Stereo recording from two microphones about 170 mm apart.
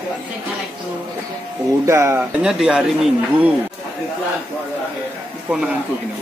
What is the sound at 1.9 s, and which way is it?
Speech, 15° right (ahead or behind).